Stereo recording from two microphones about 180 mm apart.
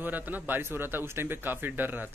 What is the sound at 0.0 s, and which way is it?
A man's voice, 10° right (ahead or behind).